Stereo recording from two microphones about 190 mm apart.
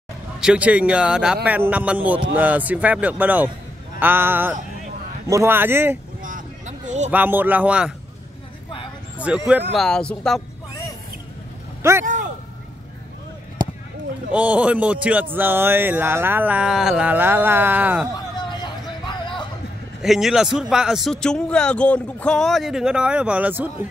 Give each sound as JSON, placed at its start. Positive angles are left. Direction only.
{"t": 0.4, "sound": "speech", "side_deg": -5}
{"t": 6.2, "sound": "a sound", "side_deg": -40}
{"t": 7.1, "sound": "speech", "side_deg": -10}
{"t": 9.5, "sound": "speech", "side_deg": 0}
{"t": 11.8, "sound": "speech", "side_deg": -15}
{"t": 14.3, "sound": "speech", "side_deg": -5}
{"t": 18.1, "sound": "a sound", "side_deg": 20}
{"t": 20.0, "sound": "speech", "side_deg": 0}